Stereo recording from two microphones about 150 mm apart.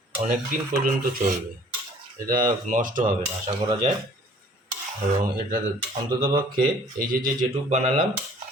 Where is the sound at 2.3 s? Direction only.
65° right (ahead or behind).